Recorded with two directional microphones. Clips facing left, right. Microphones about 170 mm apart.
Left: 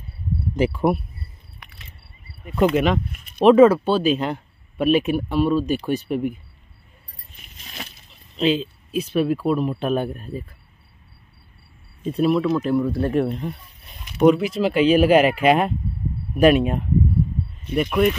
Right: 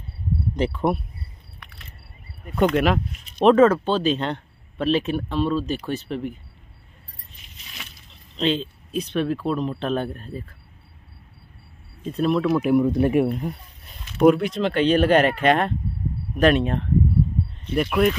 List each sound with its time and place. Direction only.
0.6 s speech: 10° left (ahead or behind)
2.6 s speech: centre (ahead or behind)
3.1 s a sound: 55° left (ahead or behind)
3.3 s speech: 5° left (ahead or behind)
7.6 s a sound: 40° left (ahead or behind)
8.4 s speech: 5° left (ahead or behind)
12.1 s speech: 5° left (ahead or behind)
12.4 s speech: 15° right (ahead or behind)
14.2 s speech: centre (ahead or behind)